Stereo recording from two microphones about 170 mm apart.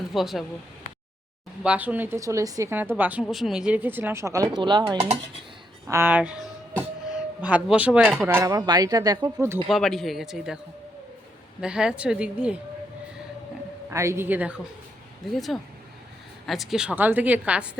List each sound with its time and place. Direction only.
0.1 s speech: centre (ahead or behind)
1.6 s a woman's voice: 10° right (ahead or behind)
4.9 s dishes: 35° right (ahead or behind)
5.9 s music: 10° right (ahead or behind)
7.4 s a woman's voice: 10° right (ahead or behind)
8.3 s speech: 15° right (ahead or behind)
9.6 s speech: centre (ahead or behind)
11.6 s speech: 5° right (ahead or behind)
13.9 s a woman's voice: 15° right (ahead or behind)